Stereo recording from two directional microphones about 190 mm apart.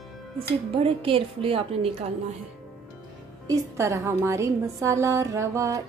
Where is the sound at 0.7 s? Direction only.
30° right (ahead or behind).